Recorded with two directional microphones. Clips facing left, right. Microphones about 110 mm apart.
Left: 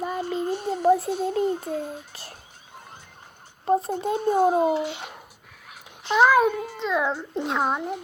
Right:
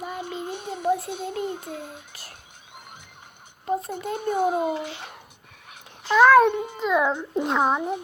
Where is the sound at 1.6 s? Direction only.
5° left (ahead or behind).